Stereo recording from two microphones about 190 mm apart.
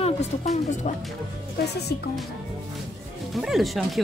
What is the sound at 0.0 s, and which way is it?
Speech, 35° left (ahead or behind).